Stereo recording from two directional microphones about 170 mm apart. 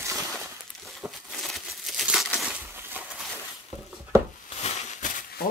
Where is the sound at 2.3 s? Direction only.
10° right (ahead or behind).